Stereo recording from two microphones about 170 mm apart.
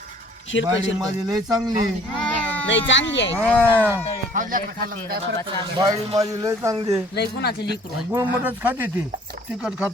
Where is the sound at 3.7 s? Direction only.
10° right (ahead or behind).